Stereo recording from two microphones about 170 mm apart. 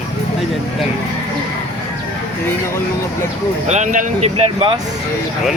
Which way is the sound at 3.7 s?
50° right (ahead or behind).